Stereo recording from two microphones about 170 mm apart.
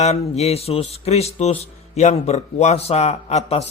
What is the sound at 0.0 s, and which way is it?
Speech, 40° left (ahead or behind).